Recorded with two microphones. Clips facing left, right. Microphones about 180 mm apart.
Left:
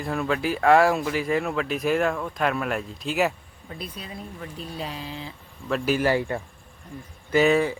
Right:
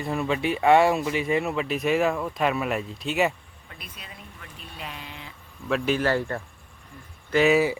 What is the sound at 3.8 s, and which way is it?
Speech, 35° left (ahead or behind).